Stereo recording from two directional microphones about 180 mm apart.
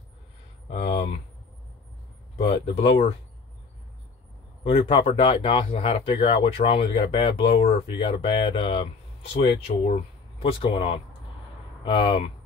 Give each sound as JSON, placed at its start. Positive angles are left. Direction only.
{"t": 0.7, "sound": "a sound", "side_deg": 60}
{"t": 2.6, "sound": "speech", "side_deg": 30}
{"t": 4.6, "sound": "speech", "side_deg": 30}